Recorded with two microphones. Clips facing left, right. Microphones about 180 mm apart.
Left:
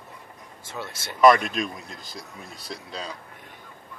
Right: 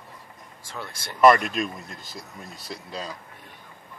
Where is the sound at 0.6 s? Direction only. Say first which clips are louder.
Left 2 dB; 25° left (ahead or behind).